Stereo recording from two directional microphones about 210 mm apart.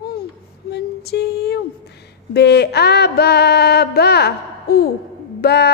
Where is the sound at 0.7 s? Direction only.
50° left (ahead or behind).